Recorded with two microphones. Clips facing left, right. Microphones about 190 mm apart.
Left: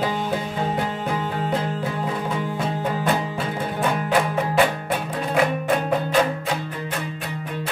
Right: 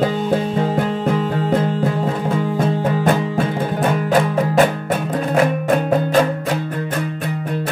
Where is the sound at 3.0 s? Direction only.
45° right (ahead or behind).